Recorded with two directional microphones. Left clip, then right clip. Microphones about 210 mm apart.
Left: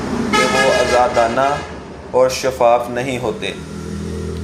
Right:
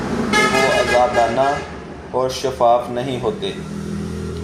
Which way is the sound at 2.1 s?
25° left (ahead or behind).